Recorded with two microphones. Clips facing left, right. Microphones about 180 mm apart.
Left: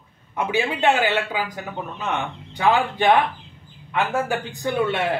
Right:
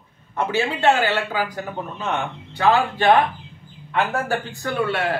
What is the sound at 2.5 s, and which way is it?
Speech, 15° left (ahead or behind).